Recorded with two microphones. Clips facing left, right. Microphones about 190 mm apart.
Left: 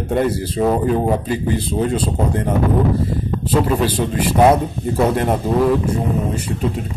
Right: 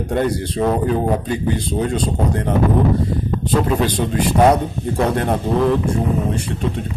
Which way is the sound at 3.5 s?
5° left (ahead or behind).